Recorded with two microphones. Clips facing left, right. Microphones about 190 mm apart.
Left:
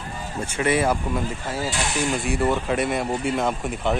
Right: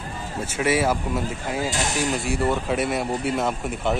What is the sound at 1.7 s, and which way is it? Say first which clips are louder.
Speech: left 2 dB; 40° right (ahead or behind).